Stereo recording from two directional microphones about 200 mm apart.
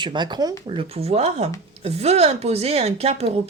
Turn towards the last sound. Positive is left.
turn(degrees=-30)  # may be behind; listen again after turning